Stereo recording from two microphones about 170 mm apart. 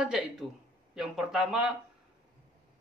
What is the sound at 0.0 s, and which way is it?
A man's voice, 5° right (ahead or behind).